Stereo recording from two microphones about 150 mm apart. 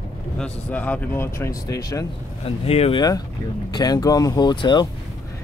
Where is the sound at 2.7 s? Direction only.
40° left (ahead or behind).